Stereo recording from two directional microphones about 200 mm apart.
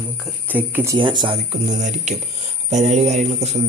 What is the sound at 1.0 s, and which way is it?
Speech, 25° right (ahead or behind).